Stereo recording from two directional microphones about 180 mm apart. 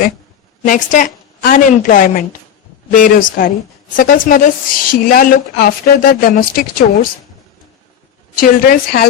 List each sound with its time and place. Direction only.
0.6 s a woman's voice: 45° left (ahead or behind)
8.4 s a woman's voice: 55° left (ahead or behind)